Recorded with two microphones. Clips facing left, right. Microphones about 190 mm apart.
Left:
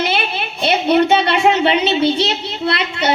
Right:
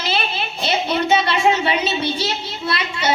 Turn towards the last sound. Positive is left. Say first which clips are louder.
# left 4 dB
turn(degrees=60)  # may be behind; listen again after turning